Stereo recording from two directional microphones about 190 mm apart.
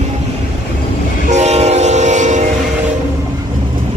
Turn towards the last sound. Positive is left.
turn(degrees=-40)  # may be behind; listen again after turning